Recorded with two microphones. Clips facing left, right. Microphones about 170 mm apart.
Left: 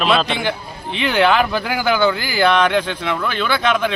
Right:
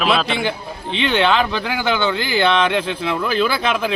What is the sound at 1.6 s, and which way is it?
Speech, 20° right (ahead or behind).